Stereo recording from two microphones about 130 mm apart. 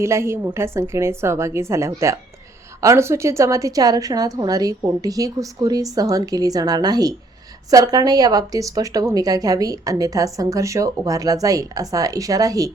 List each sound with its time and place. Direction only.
0.0 s a woman's voice: 20° right (ahead or behind)